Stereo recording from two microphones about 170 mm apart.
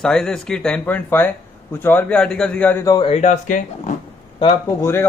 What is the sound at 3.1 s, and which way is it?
Speech, 45° left (ahead or behind).